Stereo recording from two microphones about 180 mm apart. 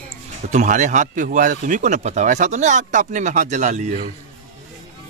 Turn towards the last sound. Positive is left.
turn(degrees=-40)  # may be behind; listen again after turning